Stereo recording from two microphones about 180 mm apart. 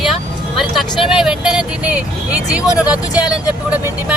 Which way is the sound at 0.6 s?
Centre (ahead or behind).